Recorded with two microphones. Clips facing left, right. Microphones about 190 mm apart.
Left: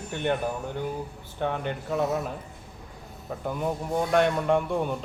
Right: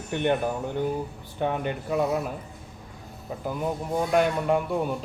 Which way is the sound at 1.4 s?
15° right (ahead or behind).